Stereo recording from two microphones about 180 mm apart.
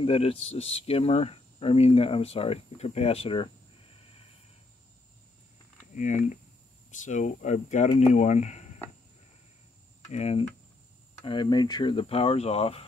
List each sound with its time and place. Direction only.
0.0 s speech: 35° left (ahead or behind)
5.9 s speech: 45° left (ahead or behind)
10.0 s speech: 35° left (ahead or behind)
11.2 s speech: 25° left (ahead or behind)